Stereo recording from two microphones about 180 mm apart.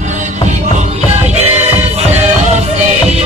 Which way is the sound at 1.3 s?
35° right (ahead or behind).